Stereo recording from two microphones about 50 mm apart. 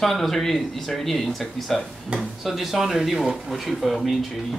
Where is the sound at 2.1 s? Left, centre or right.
Right.